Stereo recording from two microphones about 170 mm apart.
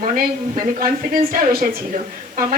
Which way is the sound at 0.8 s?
55° right (ahead or behind).